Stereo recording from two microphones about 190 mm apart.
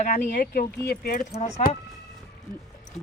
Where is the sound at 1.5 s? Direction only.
35° left (ahead or behind).